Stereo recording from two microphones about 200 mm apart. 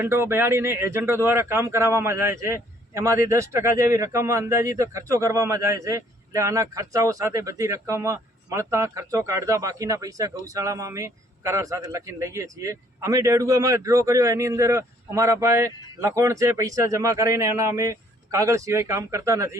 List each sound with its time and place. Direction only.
0.0 s speech: 10° right (ahead or behind)